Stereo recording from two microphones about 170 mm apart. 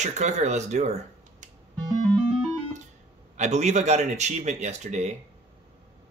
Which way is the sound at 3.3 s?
40° right (ahead or behind).